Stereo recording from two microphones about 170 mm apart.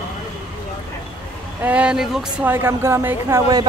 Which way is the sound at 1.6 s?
5° right (ahead or behind).